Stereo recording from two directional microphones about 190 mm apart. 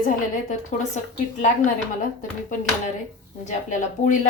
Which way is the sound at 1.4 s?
45° left (ahead or behind).